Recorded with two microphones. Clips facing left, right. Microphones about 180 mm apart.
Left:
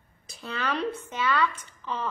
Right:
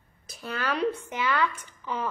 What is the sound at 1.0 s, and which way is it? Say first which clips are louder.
A woman's voice: left 1 dB; 15° right (ahead or behind).